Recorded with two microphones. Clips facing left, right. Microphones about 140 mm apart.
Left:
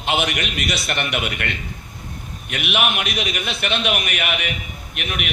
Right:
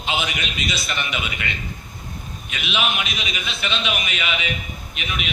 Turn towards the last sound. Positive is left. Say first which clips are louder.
# left 2 dB
turn(degrees=60)  # may be behind; listen again after turning